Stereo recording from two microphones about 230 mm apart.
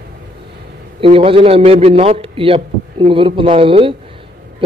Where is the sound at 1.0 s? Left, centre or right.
Right.